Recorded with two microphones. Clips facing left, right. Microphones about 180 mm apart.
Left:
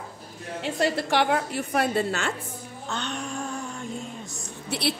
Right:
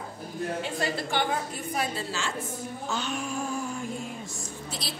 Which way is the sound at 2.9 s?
5° right (ahead or behind).